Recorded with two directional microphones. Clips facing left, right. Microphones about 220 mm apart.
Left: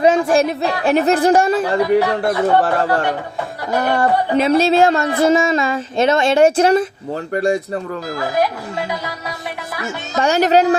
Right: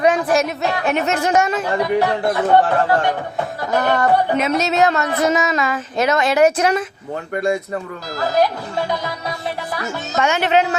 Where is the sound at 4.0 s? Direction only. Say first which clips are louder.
Left 1 dB; 30° left (ahead or behind).